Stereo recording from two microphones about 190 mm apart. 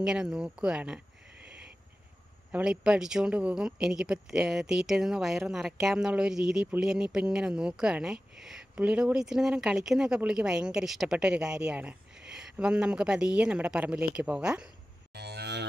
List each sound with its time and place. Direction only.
0.0 s speech: 5° right (ahead or behind)
2.5 s speech: 5° right (ahead or behind)
15.1 s cattle: 60° right (ahead or behind)